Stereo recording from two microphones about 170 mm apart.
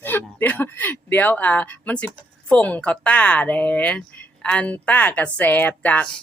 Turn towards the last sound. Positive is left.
turn(degrees=10)  # may be behind; listen again after turning